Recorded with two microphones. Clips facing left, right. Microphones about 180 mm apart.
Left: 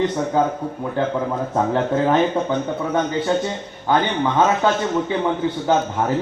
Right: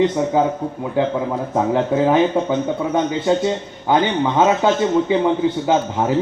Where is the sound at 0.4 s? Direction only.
15° right (ahead or behind).